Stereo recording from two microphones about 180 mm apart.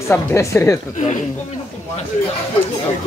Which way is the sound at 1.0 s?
45° left (ahead or behind).